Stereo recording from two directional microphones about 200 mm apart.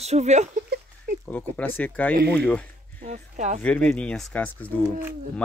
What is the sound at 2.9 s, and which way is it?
Speech, 40° right (ahead or behind).